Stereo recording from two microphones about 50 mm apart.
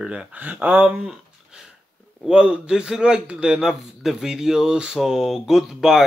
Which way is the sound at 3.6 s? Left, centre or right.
Centre.